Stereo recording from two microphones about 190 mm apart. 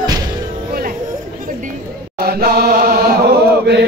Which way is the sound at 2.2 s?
55° right (ahead or behind).